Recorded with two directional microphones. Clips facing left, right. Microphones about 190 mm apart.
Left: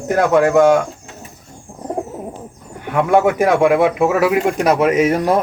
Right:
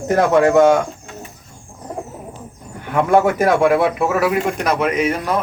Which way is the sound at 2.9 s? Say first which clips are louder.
Left 1 dB; 5° left (ahead or behind).